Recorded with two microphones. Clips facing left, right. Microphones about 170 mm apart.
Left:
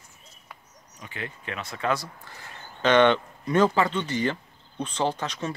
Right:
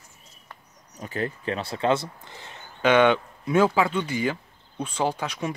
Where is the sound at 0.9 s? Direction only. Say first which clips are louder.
Right 8 dB; 40° right (ahead or behind); by 2.6 s 20° right (ahead or behind).